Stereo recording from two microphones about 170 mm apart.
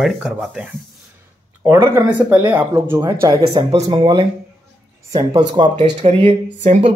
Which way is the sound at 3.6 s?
35° right (ahead or behind).